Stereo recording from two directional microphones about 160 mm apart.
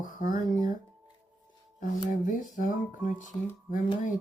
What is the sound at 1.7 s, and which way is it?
Speech, 55° left (ahead or behind).